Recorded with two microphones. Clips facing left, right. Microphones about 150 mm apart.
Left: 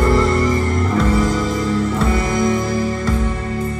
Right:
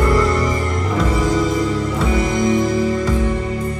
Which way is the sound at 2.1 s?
15° right (ahead or behind).